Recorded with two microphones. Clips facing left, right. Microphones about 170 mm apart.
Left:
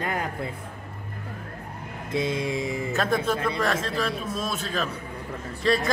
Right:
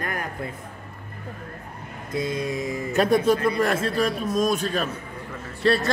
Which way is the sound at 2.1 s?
25° left (ahead or behind).